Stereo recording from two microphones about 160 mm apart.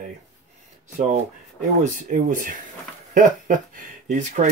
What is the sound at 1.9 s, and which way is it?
Speech, 55° right (ahead or behind).